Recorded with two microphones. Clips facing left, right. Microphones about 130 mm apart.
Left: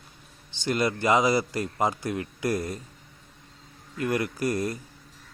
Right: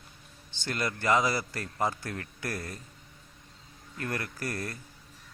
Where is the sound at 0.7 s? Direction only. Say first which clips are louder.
Left 5 dB; 15° left (ahead or behind).